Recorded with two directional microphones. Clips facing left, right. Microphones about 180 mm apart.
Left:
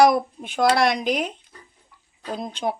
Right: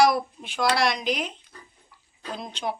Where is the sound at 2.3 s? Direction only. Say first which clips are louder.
Left 5 dB; 50° left (ahead or behind).